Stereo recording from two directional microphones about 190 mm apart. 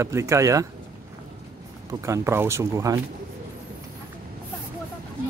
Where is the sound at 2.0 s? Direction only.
15° right (ahead or behind).